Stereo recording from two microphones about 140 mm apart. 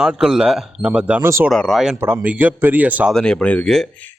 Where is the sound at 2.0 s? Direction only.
10° right (ahead or behind).